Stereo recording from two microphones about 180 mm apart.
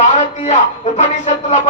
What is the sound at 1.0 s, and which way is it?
Speech, 40° left (ahead or behind).